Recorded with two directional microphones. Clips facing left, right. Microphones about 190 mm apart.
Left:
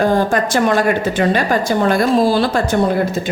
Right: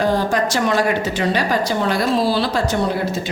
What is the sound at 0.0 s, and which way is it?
A woman's voice, 50° left (ahead or behind).